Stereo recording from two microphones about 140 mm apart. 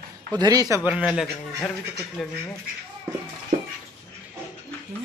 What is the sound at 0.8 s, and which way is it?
A woman's voice, 5° right (ahead or behind).